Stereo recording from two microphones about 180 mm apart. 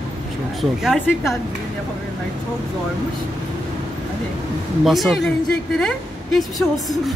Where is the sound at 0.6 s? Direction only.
Centre (ahead or behind).